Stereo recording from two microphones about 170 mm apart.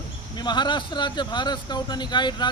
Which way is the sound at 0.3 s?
25° left (ahead or behind).